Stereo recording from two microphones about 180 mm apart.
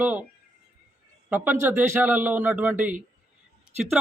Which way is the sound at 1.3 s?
10° right (ahead or behind).